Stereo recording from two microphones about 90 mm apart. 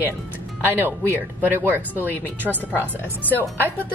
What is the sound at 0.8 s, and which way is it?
Speech, 25° right (ahead or behind).